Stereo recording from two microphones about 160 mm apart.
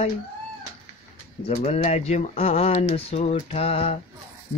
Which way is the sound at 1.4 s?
40° left (ahead or behind).